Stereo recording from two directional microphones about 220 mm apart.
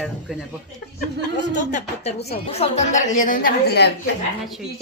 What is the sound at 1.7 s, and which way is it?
A woman's voice, 30° left (ahead or behind).